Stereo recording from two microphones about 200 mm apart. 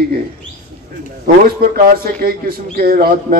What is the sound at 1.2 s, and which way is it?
A man's voice, 45° right (ahead or behind).